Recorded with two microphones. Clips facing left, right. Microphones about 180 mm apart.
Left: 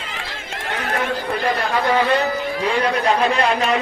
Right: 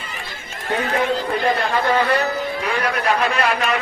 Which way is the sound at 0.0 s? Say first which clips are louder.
Left 2 dB; 90° left.